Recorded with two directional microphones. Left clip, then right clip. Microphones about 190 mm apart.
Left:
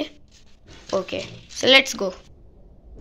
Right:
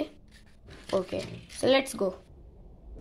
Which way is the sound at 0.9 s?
5° right (ahead or behind).